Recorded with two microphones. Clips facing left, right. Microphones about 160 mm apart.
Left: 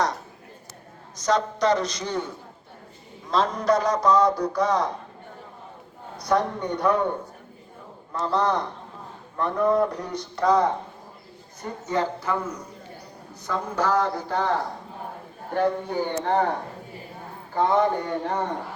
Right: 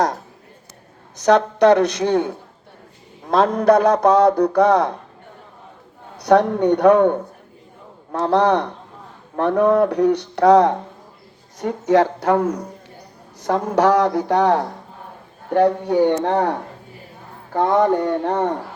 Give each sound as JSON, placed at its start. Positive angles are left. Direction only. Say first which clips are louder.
{"t": 1.1, "sound": "a man's voice", "louder": "right 8 dB", "side_deg": -65}
{"t": 6.1, "sound": "speech", "louder": "right 9 dB", "side_deg": -70}
{"t": 11.6, "sound": "speech", "louder": "right 10 dB", "side_deg": -90}
{"t": 13.4, "sound": "speech", "louder": "right 9 dB", "side_deg": -90}
{"t": 15.5, "sound": "speech", "louder": "right 8 dB", "side_deg": -70}
{"t": 17.5, "sound": "a man's voice", "louder": "right 5 dB", "side_deg": -65}